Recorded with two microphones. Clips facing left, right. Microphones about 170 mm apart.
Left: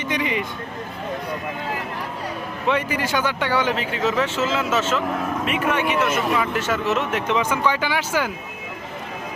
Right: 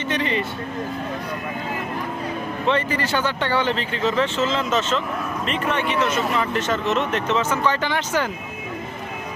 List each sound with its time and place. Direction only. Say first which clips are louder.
0.1 s speech: right 1 dB; 10° left (ahead or behind)
2.6 s speech: even; 10° left (ahead or behind)